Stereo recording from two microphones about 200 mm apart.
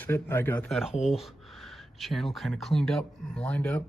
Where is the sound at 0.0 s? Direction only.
10° left (ahead or behind).